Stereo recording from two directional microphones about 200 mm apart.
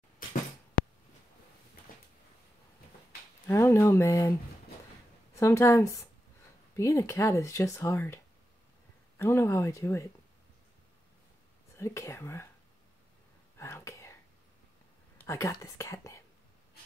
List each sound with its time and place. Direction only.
3.4 s speech: 15° left (ahead or behind)
5.4 s speech: 15° left (ahead or behind)
9.2 s speech: 15° left (ahead or behind)
11.7 s speech: 15° left (ahead or behind)
13.6 s whispering: 15° left (ahead or behind)
15.2 s speech: 15° left (ahead or behind)